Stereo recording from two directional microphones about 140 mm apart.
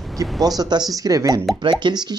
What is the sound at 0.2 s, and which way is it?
Speech, 25° right (ahead or behind).